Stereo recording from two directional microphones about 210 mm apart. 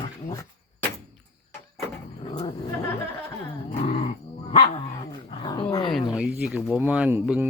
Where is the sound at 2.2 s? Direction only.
20° left (ahead or behind).